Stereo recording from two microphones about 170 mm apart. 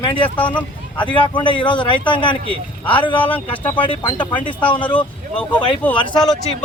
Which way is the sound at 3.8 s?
30° left (ahead or behind).